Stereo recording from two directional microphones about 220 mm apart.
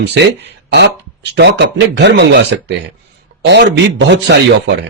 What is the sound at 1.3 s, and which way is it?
A man's voice, 50° right (ahead or behind).